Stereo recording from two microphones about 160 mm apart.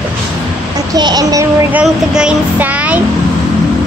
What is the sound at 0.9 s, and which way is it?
Speech, 25° right (ahead or behind).